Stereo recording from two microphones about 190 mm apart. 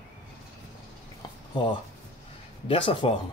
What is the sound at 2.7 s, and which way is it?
Speech, 25° left (ahead or behind).